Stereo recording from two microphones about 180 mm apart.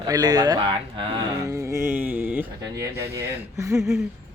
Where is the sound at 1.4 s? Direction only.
15° right (ahead or behind).